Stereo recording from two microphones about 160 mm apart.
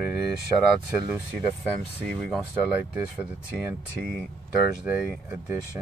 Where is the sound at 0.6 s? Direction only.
10° right (ahead or behind).